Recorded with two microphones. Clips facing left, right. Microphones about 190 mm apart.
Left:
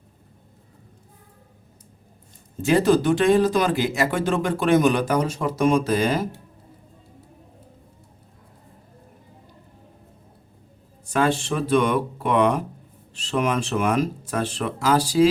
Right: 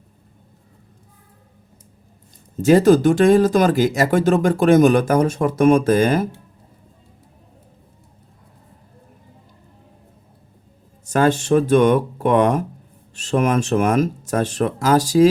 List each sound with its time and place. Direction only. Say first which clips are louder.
2.6 s speech: right 6 dB; 40° right (ahead or behind)
11.0 s speech: right 4 dB; 45° right (ahead or behind)